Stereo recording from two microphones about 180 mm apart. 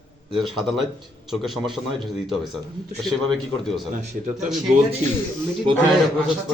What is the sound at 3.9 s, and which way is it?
Speech, 45° right (ahead or behind).